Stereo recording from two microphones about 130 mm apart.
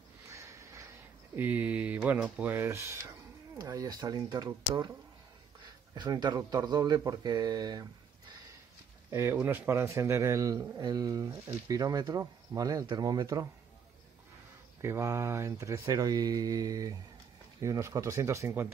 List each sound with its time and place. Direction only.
0.3 s a sound: 25° right (ahead or behind)
1.3 s mantra: 15° right (ahead or behind)
2.4 s a man's voice: 15° right (ahead or behind)
5.9 s speech: 35° right (ahead or behind)
9.1 s a man's voice: 20° right (ahead or behind)
14.8 s a man's voice: 20° right (ahead or behind)